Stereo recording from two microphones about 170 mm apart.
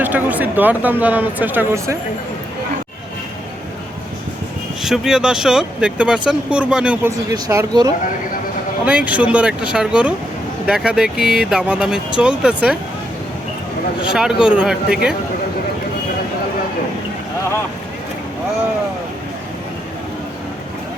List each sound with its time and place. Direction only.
0.0 s speech: 10° right (ahead or behind)
4.8 s speech: 5° right (ahead or behind)
7.3 s speech: 20° right (ahead or behind)
8.8 s speech: 10° right (ahead or behind)
14.1 s speech: 5° right (ahead or behind)